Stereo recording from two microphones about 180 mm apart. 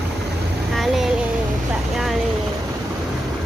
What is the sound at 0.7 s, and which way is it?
Child singing, centre (ahead or behind).